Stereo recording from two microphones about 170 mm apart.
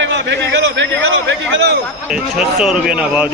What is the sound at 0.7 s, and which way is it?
Speech, 90° right.